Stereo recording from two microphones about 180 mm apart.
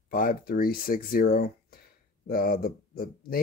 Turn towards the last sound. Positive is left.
turn(degrees=55)  # may be behind; listen again after turning